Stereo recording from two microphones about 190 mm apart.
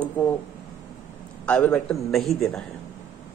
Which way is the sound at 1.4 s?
5° left (ahead or behind).